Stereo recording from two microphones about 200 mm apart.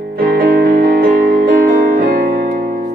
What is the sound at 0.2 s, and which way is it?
Music, 50° right (ahead or behind).